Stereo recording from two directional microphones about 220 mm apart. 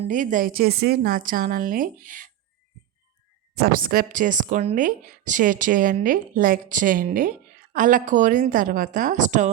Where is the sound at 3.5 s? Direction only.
40° right (ahead or behind).